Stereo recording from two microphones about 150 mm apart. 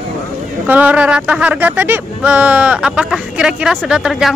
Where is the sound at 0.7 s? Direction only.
10° right (ahead or behind).